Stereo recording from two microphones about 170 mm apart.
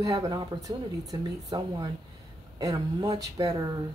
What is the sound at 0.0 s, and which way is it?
Speech, 20° right (ahead or behind).